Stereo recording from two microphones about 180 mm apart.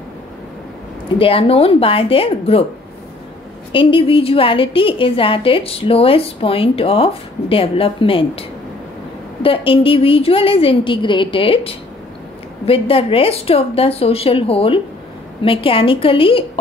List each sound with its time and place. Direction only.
1.1 s a woman's voice: 30° left (ahead or behind)
3.7 s a woman's voice: 30° left (ahead or behind)